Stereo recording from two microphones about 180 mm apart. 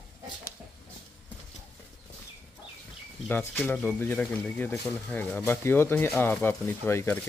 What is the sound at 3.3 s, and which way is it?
Speech, 10° left (ahead or behind).